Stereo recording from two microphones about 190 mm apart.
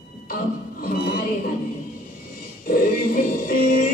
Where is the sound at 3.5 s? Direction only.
50° left (ahead or behind).